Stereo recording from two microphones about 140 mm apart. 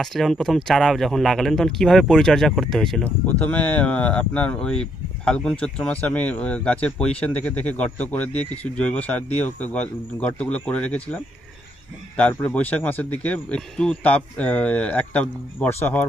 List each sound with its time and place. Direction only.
0.0 s speech: 5° left (ahead or behind)